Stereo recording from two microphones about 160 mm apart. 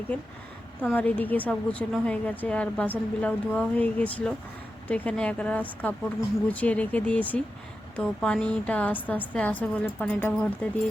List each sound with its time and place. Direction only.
0.8 s a woman's voice: 10° left (ahead or behind)